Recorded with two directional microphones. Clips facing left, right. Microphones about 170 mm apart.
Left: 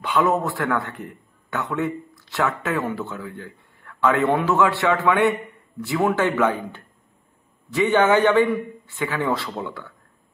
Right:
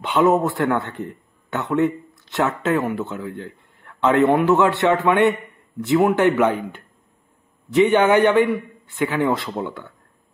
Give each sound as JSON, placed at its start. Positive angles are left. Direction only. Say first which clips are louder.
{"t": 0.0, "sound": "a man's voice", "louder": "right 4 dB", "side_deg": -25}